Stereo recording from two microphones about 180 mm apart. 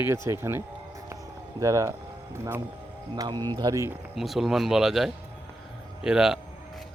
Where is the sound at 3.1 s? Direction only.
25° right (ahead or behind).